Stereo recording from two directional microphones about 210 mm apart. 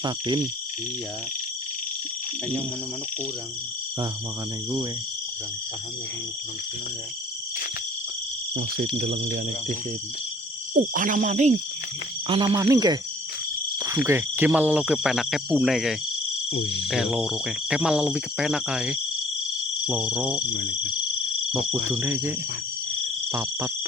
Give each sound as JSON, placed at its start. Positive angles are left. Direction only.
{"t": 0.0, "sound": "speech", "side_deg": -20}
{"t": 8.5, "sound": "speech", "side_deg": -50}
{"t": 10.9, "sound": "cricket", "side_deg": -40}
{"t": 12.3, "sound": "speech", "side_deg": -20}
{"t": 16.5, "sound": "speech", "side_deg": 55}
{"t": 16.8, "sound": "speech", "side_deg": 0}
{"t": 20.5, "sound": "speech", "side_deg": 60}
{"t": 21.8, "sound": "speech", "side_deg": -10}
{"t": 23.3, "sound": "speech", "side_deg": -10}